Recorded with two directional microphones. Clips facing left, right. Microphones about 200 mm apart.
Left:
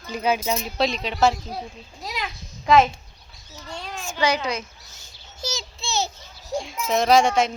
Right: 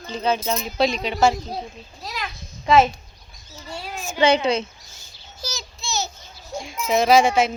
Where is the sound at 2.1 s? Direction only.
10° left (ahead or behind).